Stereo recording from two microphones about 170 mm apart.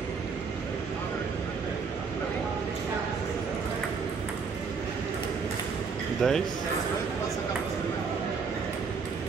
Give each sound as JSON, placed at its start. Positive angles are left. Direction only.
{"t": 6.2, "sound": "speech", "side_deg": 0}